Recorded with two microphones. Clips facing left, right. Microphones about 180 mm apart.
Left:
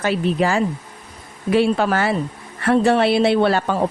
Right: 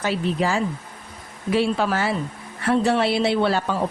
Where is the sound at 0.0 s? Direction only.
60° left (ahead or behind).